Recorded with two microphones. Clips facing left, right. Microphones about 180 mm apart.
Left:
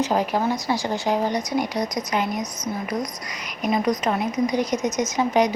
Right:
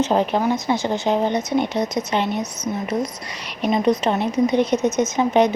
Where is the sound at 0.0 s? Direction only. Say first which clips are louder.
Right 3 dB; 25° right (ahead or behind).